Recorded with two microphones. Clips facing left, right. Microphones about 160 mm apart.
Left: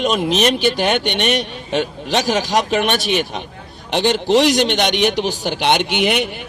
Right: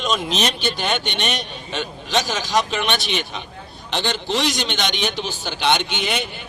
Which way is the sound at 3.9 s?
65° left (ahead or behind).